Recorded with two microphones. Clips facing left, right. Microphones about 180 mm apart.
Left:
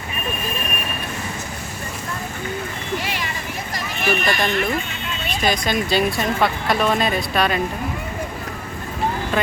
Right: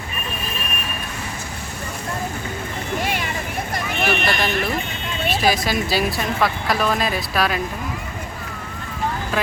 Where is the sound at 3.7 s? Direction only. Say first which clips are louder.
Right 6 dB; 60° right (ahead or behind).